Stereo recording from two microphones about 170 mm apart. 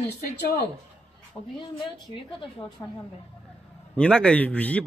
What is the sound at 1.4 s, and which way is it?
Speech, 15° left (ahead or behind).